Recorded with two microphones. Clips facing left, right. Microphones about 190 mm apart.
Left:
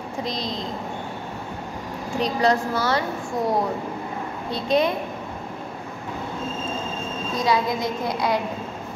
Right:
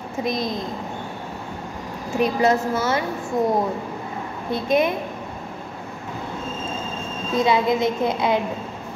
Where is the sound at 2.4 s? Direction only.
20° right (ahead or behind).